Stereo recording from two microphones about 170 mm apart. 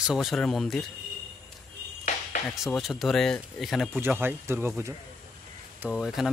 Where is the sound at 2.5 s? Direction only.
Centre (ahead or behind).